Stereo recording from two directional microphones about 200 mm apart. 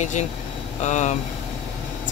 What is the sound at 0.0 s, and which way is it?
Speech, 35° left (ahead or behind).